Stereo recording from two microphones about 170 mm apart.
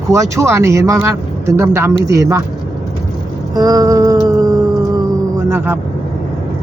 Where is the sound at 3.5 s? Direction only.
20° right (ahead or behind).